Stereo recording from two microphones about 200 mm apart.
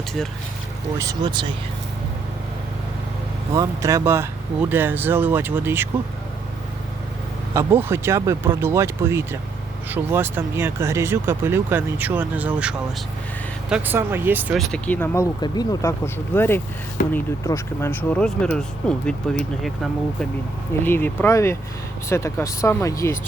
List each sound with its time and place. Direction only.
0.9 s speech: 20° right (ahead or behind)
3.5 s speech: 15° right (ahead or behind)
7.5 s speech: 10° right (ahead or behind)
14.7 s speech: 10° left (ahead or behind)